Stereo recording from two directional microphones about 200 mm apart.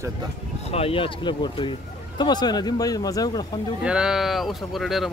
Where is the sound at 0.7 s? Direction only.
30° left (ahead or behind).